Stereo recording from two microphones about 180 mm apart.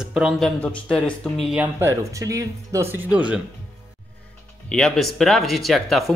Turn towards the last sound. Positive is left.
turn(degrees=0)  # may be behind; listen again after turning